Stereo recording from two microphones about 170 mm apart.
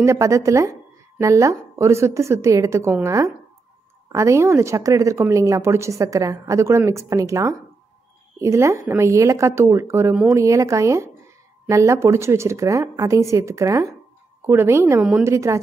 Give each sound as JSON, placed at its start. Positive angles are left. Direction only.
{"t": 0.0, "sound": "a woman's voice", "side_deg": -20}